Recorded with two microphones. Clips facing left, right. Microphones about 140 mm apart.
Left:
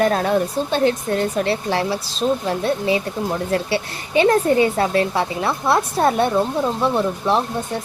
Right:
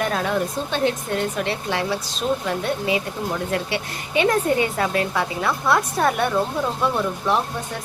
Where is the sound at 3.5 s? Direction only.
30° left (ahead or behind).